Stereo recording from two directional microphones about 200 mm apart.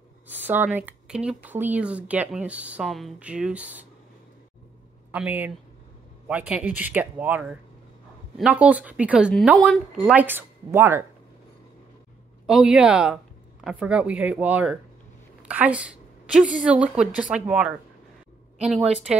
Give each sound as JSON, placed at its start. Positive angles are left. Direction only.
{"t": 0.3, "sound": "speech", "side_deg": -10}
{"t": 5.1, "sound": "speech", "side_deg": -10}
{"t": 12.4, "sound": "a woman's voice", "side_deg": -5}
{"t": 15.4, "sound": "a sound", "side_deg": -5}
{"t": 16.5, "sound": "a woman's voice", "side_deg": -5}